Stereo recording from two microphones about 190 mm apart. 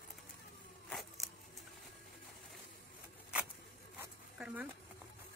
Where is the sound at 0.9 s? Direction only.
Centre (ahead or behind).